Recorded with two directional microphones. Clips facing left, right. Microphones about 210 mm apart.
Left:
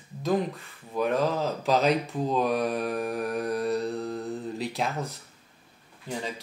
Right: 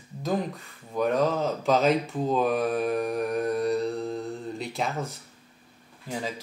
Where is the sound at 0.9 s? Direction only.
Centre (ahead or behind).